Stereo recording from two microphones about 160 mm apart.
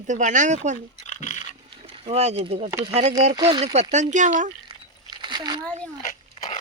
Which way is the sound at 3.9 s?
50° right (ahead or behind).